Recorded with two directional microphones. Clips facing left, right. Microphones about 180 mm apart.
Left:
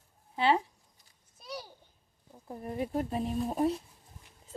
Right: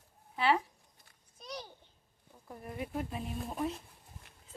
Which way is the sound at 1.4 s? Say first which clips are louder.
Left 2 dB; 5° left (ahead or behind).